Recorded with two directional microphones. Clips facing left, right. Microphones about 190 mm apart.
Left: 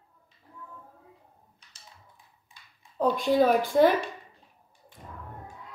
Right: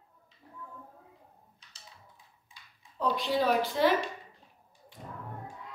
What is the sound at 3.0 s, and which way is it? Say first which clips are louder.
Speech: left 6 dB; 50° left (ahead or behind).